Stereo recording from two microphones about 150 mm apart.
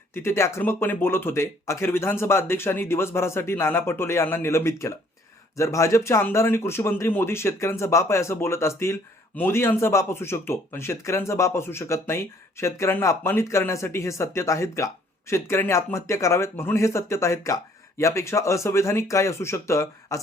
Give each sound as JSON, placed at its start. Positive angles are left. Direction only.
{"t": 0.1, "sound": "speech", "side_deg": 15}